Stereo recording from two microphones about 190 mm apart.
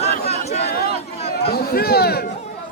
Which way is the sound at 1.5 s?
55° left (ahead or behind).